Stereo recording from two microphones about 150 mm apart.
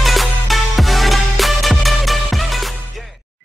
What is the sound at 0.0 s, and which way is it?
Music, centre (ahead or behind).